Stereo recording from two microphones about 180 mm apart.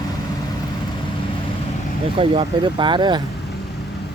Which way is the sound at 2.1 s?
30° right (ahead or behind).